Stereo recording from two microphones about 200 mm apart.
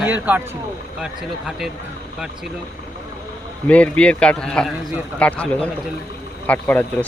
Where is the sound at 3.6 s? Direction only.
5° left (ahead or behind).